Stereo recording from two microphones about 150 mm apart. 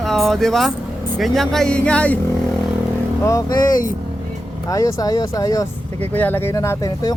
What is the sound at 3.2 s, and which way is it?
Speech, 25° left (ahead or behind).